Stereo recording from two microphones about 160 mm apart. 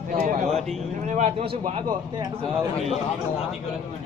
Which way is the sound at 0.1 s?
55° right (ahead or behind).